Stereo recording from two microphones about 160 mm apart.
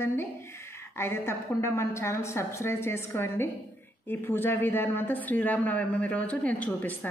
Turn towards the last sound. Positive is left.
turn(degrees=10)  # may be behind; listen again after turning